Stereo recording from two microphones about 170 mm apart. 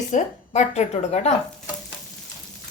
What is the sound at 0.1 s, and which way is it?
A woman's voice, 40° left (ahead or behind).